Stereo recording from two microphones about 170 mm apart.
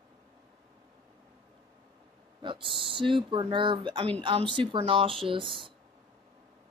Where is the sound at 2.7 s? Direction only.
30° right (ahead or behind).